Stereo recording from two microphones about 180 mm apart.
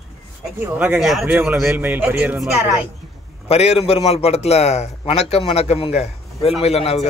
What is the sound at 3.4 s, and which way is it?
A man's voice, 35° left (ahead or behind).